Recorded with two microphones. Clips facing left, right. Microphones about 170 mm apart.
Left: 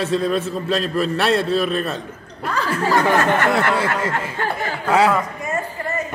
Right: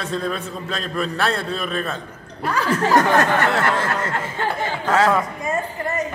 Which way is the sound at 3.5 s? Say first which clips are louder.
Left 2 dB; 10° left (ahead or behind).